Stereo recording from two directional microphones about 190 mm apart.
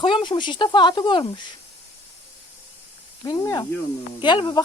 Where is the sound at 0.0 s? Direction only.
25° left (ahead or behind).